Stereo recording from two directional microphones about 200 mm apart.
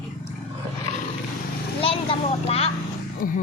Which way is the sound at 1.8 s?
30° left (ahead or behind).